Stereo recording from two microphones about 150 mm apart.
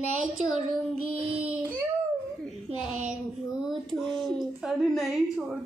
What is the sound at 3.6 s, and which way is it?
A child's voice, centre (ahead or behind).